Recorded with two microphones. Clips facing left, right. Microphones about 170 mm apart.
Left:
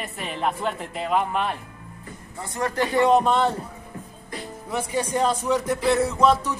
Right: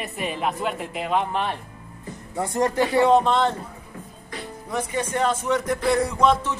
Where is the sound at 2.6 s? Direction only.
10° right (ahead or behind).